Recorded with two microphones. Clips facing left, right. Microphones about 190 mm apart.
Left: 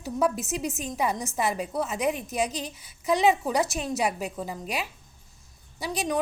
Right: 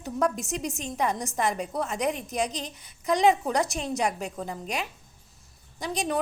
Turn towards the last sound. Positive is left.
turn(degrees=0)  # may be behind; listen again after turning